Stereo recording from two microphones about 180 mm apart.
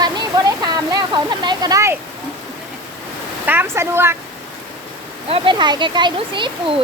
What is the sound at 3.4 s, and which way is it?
Speech, 10° right (ahead or behind).